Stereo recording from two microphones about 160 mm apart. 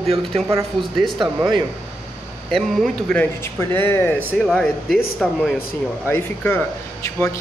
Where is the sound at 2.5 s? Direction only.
Centre (ahead or behind).